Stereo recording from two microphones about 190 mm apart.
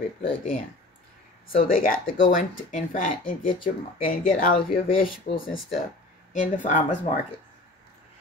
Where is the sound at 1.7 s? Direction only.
45° left (ahead or behind).